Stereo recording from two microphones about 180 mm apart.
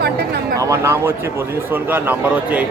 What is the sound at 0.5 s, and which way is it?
A man's voice, 15° right (ahead or behind).